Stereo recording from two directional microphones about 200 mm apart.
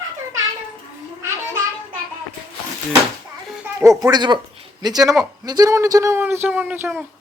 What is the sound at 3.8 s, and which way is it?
Speech, 15° right (ahead or behind).